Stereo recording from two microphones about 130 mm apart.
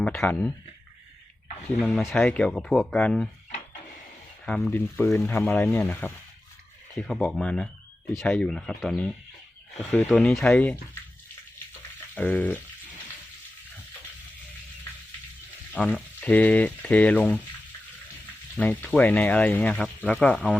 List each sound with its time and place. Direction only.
0.0 s speech: 10° left (ahead or behind)
1.8 s speech: 5° left (ahead or behind)
4.4 s speech: 5° left (ahead or behind)
4.7 s speech: 20° left (ahead or behind)
6.9 s speech: centre (ahead or behind)
12.1 s speech: 10° left (ahead or behind)
15.8 s speech: 10° left (ahead or behind)
18.5 s speech: 10° left (ahead or behind)